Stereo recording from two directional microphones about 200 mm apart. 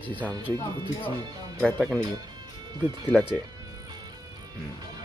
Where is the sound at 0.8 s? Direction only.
25° right (ahead or behind).